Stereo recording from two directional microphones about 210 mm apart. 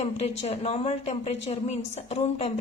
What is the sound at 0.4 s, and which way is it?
A woman's voice, 30° left (ahead or behind).